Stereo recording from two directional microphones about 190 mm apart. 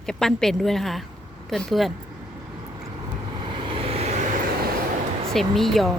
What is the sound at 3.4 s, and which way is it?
Vehicle, 25° right (ahead or behind).